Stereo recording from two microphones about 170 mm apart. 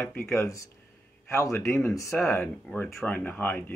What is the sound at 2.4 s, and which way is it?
Speech, 5° left (ahead or behind).